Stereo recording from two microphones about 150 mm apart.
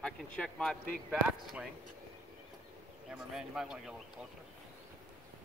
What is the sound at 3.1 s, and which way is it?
Speech, 5° right (ahead or behind).